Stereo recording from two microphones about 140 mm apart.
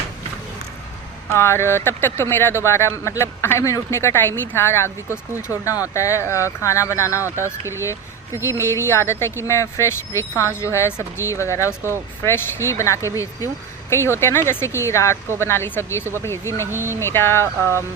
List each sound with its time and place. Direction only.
1.3 s speech: 20° left (ahead or behind)